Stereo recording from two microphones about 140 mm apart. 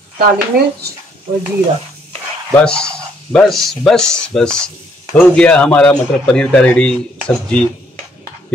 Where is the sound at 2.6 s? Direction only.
5° left (ahead or behind).